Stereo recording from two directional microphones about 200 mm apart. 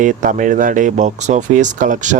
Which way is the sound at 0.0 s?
40° right (ahead or behind).